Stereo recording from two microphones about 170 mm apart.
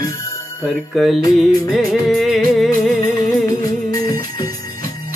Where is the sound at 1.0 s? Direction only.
Centre (ahead or behind).